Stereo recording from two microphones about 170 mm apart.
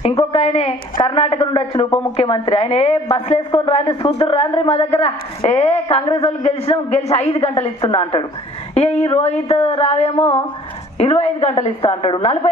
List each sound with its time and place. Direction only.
0.1 s a woman's voice: 35° left (ahead or behind)